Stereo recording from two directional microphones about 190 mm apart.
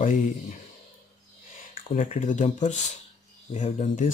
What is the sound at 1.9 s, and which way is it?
Speech, 40° left (ahead or behind).